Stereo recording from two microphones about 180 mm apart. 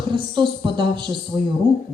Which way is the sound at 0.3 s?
25° right (ahead or behind).